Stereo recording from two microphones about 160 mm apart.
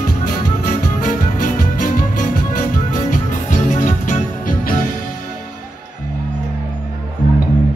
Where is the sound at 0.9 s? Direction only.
55° left (ahead or behind).